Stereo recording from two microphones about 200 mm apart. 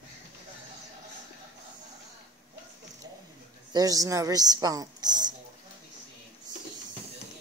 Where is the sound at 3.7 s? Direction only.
20° right (ahead or behind).